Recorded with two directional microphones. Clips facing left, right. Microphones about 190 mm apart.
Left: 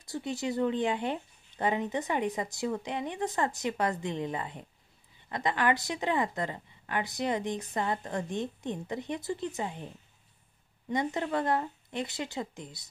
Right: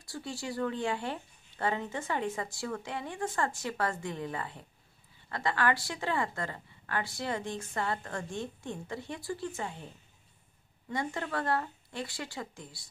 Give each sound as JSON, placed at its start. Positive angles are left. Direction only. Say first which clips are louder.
{"t": 0.0, "sound": "speech", "louder": "left 5 dB", "side_deg": 20}
{"t": 10.9, "sound": "speech", "louder": "left 4 dB", "side_deg": 20}